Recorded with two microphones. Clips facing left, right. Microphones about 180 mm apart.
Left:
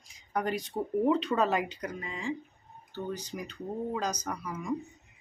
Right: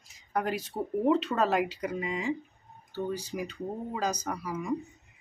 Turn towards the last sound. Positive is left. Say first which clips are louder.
# right 3 dB
turn(degrees=-10)  # may be behind; listen again after turning